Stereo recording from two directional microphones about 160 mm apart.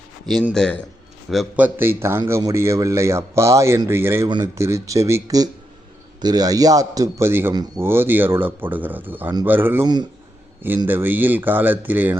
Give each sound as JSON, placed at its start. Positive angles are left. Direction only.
{"t": 0.5, "sound": "a man's voice", "side_deg": 5}
{"t": 9.8, "sound": "a man's voice", "side_deg": -25}
{"t": 10.8, "sound": "a man's voice", "side_deg": -15}